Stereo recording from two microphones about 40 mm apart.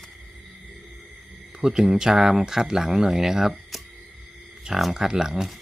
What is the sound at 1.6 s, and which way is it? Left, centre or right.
Speech, centre.